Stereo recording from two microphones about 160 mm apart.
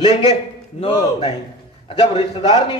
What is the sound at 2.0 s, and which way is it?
Speech, 30° left (ahead or behind).